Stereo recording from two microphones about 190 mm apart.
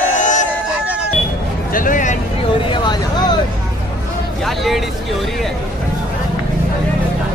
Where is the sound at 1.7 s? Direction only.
45° left (ahead or behind).